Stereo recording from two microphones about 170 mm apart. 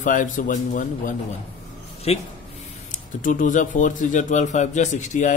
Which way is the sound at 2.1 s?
40° left (ahead or behind).